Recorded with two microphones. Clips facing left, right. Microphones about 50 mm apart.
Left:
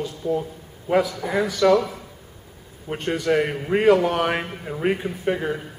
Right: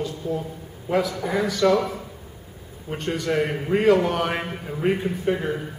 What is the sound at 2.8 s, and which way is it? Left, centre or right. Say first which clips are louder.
A man's voice: left 3 dB; centre.